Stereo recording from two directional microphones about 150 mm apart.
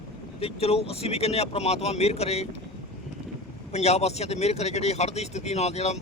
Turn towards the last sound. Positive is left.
turn(degrees=45)  # may be behind; listen again after turning